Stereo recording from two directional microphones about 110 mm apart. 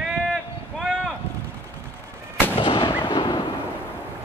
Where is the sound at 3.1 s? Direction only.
50° left (ahead or behind).